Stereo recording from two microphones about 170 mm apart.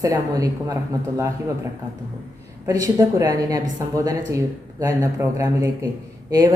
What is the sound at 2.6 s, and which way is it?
A woman's voice, 20° right (ahead or behind).